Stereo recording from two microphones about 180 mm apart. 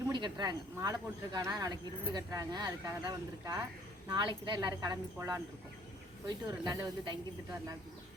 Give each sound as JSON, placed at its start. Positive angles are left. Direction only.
{"t": 0.1, "sound": "speech", "side_deg": -25}